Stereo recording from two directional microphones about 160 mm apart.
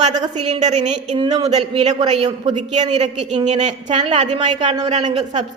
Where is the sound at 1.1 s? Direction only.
25° right (ahead or behind).